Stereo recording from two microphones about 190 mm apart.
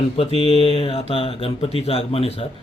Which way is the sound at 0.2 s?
30° left (ahead or behind).